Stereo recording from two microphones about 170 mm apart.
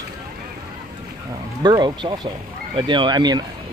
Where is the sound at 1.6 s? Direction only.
25° right (ahead or behind).